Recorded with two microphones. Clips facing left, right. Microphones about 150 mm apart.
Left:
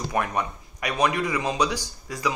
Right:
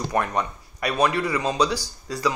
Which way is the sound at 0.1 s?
15° left (ahead or behind).